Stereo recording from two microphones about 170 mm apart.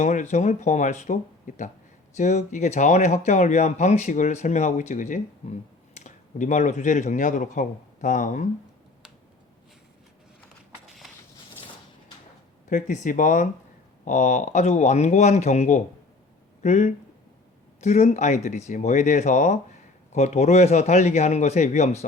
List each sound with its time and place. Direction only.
0.0 s speech: 45° left (ahead or behind)
12.6 s a man's voice: 45° left (ahead or behind)